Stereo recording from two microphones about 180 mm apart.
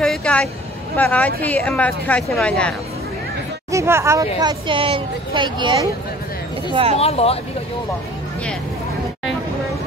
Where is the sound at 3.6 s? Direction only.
15° right (ahead or behind); by 7.0 s 35° right (ahead or behind).